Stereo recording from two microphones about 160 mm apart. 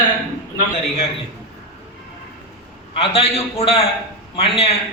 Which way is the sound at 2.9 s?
40° left (ahead or behind).